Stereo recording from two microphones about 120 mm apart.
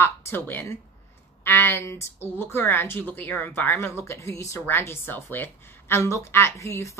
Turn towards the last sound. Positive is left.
turn(degrees=25)  # may be behind; listen again after turning